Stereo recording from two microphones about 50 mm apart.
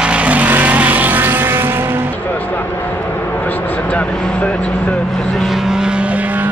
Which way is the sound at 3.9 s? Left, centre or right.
Left.